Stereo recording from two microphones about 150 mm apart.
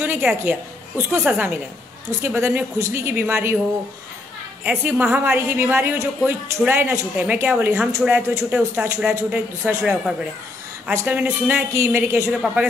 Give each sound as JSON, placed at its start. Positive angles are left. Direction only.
{"t": 0.0, "sound": "a woman's voice", "side_deg": -15}
{"t": 1.3, "sound": "a woman's voice", "side_deg": -5}
{"t": 2.0, "sound": "a woman's voice", "side_deg": -20}
{"t": 4.6, "sound": "a woman's voice", "side_deg": -15}
{"t": 12.3, "sound": "a woman's voice", "side_deg": -5}